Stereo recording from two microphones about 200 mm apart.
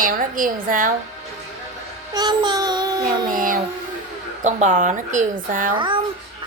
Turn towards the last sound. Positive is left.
turn(degrees=-25)  # may be behind; listen again after turning